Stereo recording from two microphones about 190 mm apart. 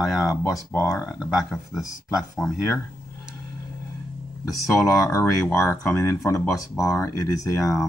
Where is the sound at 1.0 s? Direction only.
5° right (ahead or behind).